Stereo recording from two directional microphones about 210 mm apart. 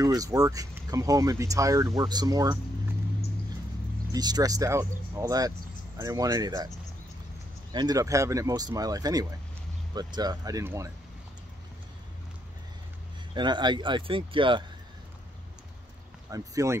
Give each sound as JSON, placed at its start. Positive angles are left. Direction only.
{"t": 0.0, "sound": "speech", "side_deg": -15}
{"t": 4.1, "sound": "speech", "side_deg": -20}
{"t": 7.7, "sound": "speech", "side_deg": -20}
{"t": 13.3, "sound": "speech", "side_deg": -20}
{"t": 16.3, "sound": "speech", "side_deg": -15}